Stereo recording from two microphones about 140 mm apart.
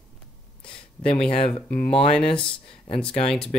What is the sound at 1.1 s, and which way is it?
Speech, 40° left (ahead or behind).